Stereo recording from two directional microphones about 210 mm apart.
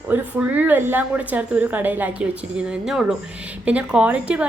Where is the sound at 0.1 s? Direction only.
5° right (ahead or behind).